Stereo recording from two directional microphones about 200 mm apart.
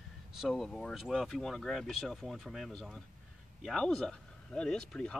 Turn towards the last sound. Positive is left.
turn(degrees=5)  # may be behind; listen again after turning